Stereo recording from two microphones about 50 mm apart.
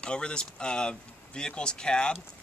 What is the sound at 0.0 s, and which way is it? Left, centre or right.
Speech, centre.